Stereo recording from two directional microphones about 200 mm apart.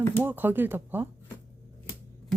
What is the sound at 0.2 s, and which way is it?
Speech, 10° right (ahead or behind).